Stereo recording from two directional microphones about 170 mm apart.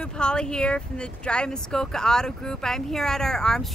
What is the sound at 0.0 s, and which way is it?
Speech, 5° left (ahead or behind).